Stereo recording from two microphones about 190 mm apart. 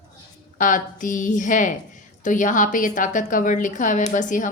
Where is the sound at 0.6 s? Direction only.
45° left (ahead or behind).